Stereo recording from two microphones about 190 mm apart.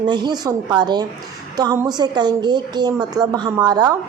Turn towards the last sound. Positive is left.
turn(degrees=-20)  # may be behind; listen again after turning